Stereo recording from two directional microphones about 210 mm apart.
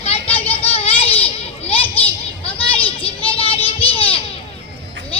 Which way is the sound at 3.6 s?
25° left (ahead or behind).